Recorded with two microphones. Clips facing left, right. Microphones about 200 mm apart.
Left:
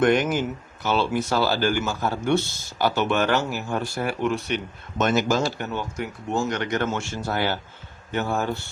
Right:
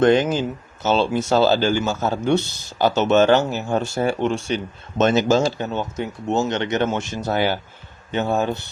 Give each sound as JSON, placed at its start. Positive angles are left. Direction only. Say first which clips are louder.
{"t": 0.0, "sound": "speech", "louder": "right 4 dB", "side_deg": -25}